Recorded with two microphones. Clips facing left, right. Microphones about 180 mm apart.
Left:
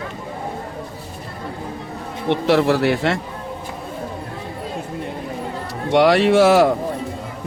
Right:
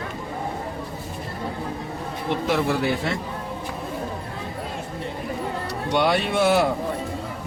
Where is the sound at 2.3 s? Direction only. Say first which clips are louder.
Left 7 dB; 75° left (ahead or behind).